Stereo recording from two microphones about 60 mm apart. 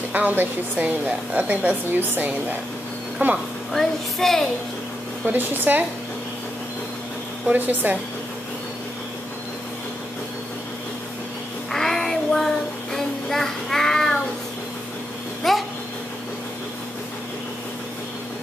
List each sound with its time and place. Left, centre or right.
0.1 s a woman's voice: right
3.7 s child singing: centre
5.2 s speech: right
7.5 s speech: right
11.7 s child singing: centre
15.4 s babbling: centre